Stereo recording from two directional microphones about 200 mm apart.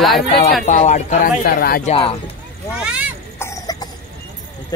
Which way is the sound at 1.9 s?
25° left (ahead or behind).